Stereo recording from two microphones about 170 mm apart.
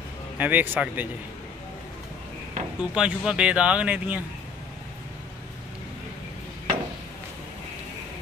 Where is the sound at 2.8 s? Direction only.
5° right (ahead or behind).